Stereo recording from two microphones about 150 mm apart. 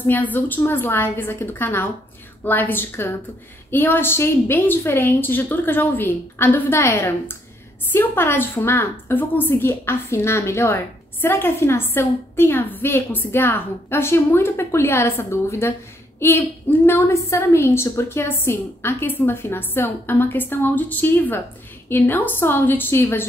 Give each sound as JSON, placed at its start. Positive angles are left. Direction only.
{"t": 0.0, "sound": "a woman's voice", "side_deg": 10}